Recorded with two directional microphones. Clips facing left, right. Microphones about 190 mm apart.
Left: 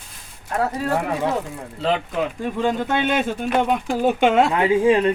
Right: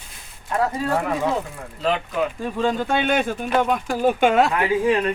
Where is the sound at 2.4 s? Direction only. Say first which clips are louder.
Left 1 dB; 15° left (ahead or behind).